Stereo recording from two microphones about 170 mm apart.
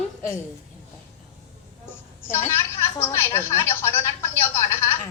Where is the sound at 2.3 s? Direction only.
15° left (ahead or behind).